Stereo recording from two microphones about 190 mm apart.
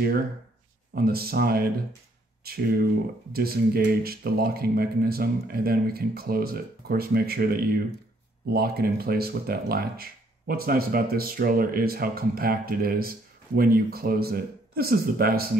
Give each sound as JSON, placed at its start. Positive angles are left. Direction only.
{"t": 0.9, "sound": "speech", "side_deg": -55}